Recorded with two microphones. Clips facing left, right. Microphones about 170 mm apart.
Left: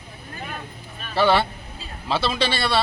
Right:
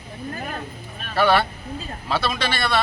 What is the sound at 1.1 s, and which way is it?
A man's voice, 25° left (ahead or behind).